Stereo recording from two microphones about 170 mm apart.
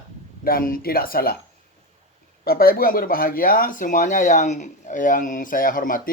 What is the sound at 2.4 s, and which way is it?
Speech, 60° left (ahead or behind).